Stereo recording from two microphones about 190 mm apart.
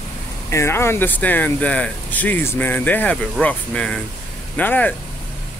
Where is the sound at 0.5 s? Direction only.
15° left (ahead or behind).